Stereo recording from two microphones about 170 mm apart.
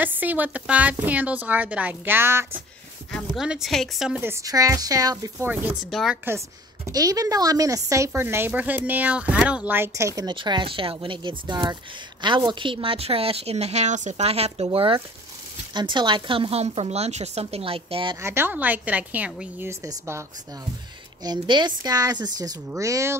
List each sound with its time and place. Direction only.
0.0 s a woman's voice: 10° right (ahead or behind)
4.2 s speech: 15° right (ahead or behind)
5.9 s a woman's voice: centre (ahead or behind)
6.9 s speech: 20° right (ahead or behind)
18.2 s a woman's voice: 15° right (ahead or behind)
19.7 s a woman's voice: 20° right (ahead or behind)